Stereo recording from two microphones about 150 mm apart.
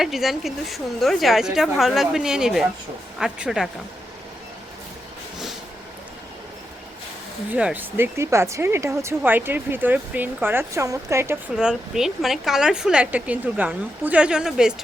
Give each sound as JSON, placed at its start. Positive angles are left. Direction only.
{"t": 0.0, "sound": "speech", "side_deg": 0}
{"t": 7.5, "sound": "speech", "side_deg": -10}
{"t": 11.5, "sound": "speech", "side_deg": -5}